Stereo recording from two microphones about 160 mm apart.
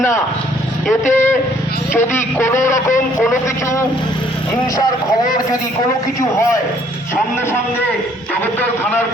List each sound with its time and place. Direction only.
1.1 s speech: 15° left (ahead or behind)
8.8 s speech: 10° left (ahead or behind)